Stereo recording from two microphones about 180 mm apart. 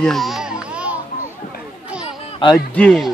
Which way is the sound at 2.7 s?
Centre (ahead or behind).